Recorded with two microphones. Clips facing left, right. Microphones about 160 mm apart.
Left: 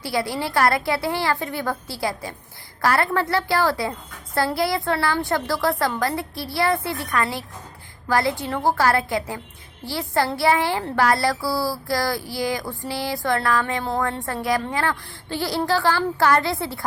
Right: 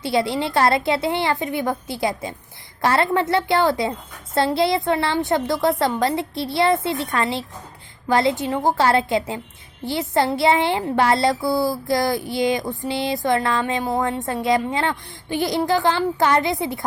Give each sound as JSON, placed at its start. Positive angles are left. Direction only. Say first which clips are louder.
{"t": 0.0, "sound": "speech", "louder": "right 4 dB", "side_deg": -20}